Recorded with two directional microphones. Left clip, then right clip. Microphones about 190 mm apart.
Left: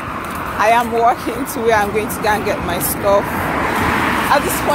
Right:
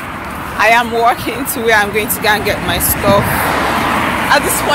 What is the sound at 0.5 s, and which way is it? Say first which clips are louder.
Speech: right 3 dB; 5° left (ahead or behind).